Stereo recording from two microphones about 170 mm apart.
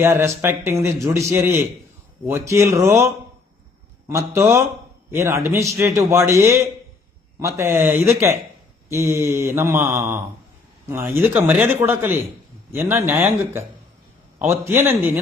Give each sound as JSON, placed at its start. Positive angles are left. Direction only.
{"t": 0.0, "sound": "a man's voice", "side_deg": -15}
{"t": 4.1, "sound": "a man's voice", "side_deg": -15}